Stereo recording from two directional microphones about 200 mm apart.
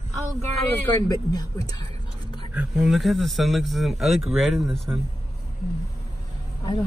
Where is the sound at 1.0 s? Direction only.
20° left (ahead or behind).